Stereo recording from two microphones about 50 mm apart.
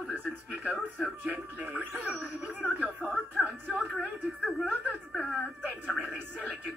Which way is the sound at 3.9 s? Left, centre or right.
Centre.